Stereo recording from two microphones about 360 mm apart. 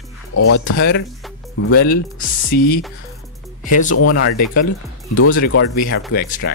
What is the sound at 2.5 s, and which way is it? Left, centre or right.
Speech, left.